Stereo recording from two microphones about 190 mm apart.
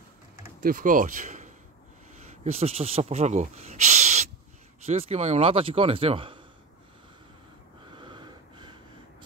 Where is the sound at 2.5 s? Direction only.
30° right (ahead or behind).